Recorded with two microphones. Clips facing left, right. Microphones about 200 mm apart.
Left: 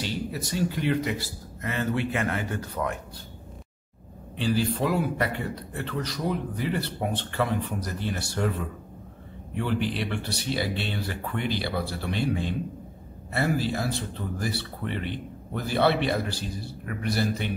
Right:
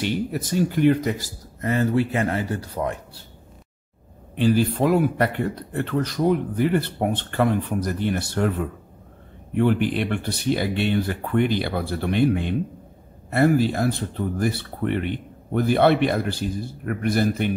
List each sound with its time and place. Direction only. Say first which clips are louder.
0.0 s speech: right 6 dB; 50° right (ahead or behind); by 3.3 s 30° right (ahead or behind)
4.4 s speech: right 6 dB; 50° right (ahead or behind)